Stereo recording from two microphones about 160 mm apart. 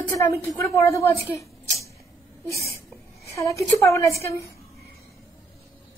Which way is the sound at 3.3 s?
20° left (ahead or behind).